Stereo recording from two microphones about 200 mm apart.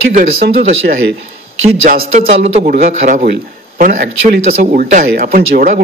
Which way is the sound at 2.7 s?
50° right (ahead or behind).